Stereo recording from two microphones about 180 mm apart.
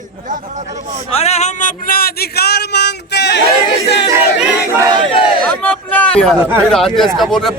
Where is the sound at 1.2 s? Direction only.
35° left (ahead or behind); by 3.4 s 70° left (ahead or behind).